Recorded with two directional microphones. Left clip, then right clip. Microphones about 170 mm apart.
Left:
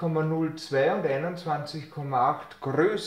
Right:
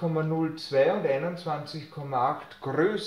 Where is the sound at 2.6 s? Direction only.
35° left (ahead or behind).